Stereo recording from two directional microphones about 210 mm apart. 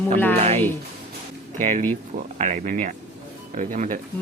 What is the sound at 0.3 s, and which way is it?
Speech, 30° right (ahead or behind).